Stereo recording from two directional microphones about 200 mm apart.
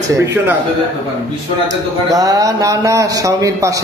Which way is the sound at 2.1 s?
15° right (ahead or behind).